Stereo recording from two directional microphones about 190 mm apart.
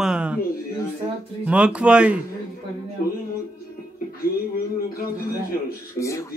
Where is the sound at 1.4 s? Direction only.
5° right (ahead or behind).